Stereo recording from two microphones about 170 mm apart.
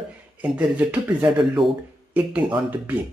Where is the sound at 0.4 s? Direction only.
10° right (ahead or behind).